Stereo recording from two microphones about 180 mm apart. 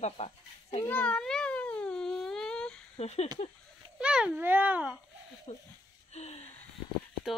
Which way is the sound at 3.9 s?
5° right (ahead or behind).